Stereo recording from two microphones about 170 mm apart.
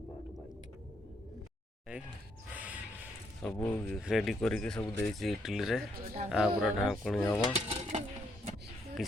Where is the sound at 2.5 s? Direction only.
10° right (ahead or behind).